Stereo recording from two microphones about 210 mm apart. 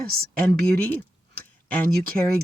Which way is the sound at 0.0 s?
45° right (ahead or behind).